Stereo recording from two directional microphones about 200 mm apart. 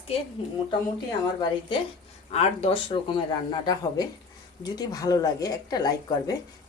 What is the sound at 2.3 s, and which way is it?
Speech, 30° left (ahead or behind).